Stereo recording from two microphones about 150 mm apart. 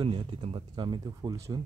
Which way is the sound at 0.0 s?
35° right (ahead or behind).